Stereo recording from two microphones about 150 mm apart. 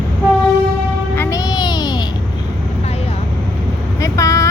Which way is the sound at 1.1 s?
20° left (ahead or behind).